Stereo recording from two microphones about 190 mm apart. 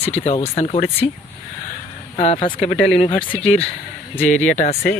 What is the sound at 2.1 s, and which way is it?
Speech, 30° left (ahead or behind).